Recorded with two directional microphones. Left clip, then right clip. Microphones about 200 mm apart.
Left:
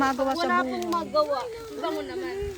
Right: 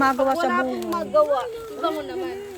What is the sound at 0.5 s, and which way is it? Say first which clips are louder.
Speech: right 1 dB; centre (ahead or behind).